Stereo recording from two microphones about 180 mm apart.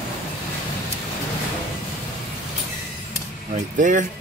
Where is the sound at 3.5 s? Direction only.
45° right (ahead or behind).